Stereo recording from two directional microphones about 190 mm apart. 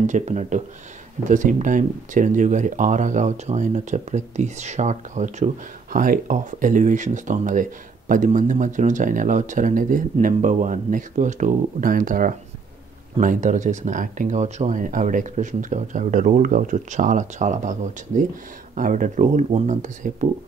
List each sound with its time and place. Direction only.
0.0 s speech: 40° right (ahead or behind)